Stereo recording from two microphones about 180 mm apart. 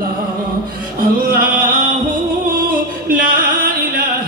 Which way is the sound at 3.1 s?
50° right (ahead or behind).